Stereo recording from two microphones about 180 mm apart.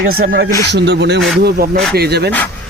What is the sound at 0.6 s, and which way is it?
Speech, 70° right (ahead or behind).